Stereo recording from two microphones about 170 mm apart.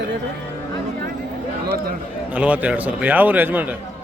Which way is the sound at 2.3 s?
10° right (ahead or behind).